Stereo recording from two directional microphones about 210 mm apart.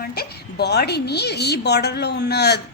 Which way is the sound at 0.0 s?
45° left (ahead or behind).